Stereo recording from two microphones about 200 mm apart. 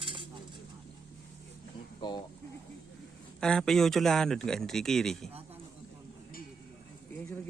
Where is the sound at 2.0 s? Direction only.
20° left (ahead or behind).